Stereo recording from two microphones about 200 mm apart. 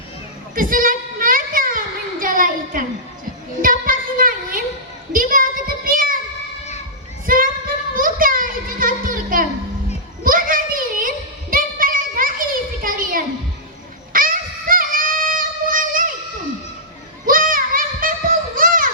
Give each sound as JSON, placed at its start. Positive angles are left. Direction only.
{"t": 0.5, "sound": "child singing", "side_deg": -45}
{"t": 3.6, "sound": "a sound", "side_deg": -45}
{"t": 5.1, "sound": "child singing", "side_deg": -45}
{"t": 7.3, "sound": "singing", "side_deg": -45}
{"t": 7.9, "sound": "a sound", "side_deg": -45}
{"t": 14.1, "sound": "music", "side_deg": -45}
{"t": 17.2, "sound": "music", "side_deg": -45}